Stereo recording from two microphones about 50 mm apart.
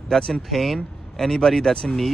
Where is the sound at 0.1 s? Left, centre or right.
Centre.